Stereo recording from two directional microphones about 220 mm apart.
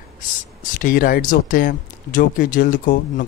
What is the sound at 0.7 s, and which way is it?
Speech, 40° left (ahead or behind).